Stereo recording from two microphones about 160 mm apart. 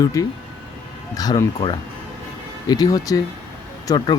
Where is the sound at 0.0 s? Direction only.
20° left (ahead or behind).